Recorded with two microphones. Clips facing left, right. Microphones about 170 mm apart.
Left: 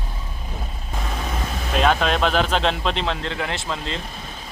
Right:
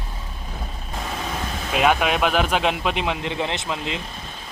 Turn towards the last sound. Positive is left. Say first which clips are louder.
# right 1 dB
turn(degrees=-15)  # may be behind; listen again after turning